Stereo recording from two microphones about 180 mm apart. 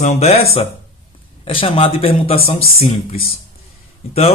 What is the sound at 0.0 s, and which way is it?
Speech, 40° left (ahead or behind).